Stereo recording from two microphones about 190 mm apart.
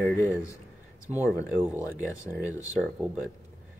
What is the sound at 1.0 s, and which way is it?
Speech, 10° right (ahead or behind).